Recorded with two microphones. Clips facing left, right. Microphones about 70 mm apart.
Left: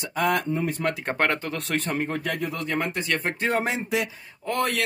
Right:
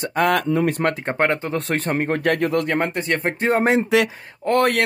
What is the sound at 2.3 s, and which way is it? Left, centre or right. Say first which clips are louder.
Speech: right 9 dB; right.